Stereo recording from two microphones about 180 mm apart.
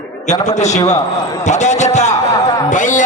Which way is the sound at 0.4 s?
40° left (ahead or behind).